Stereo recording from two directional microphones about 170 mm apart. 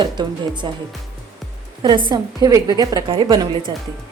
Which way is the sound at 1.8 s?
30° right (ahead or behind).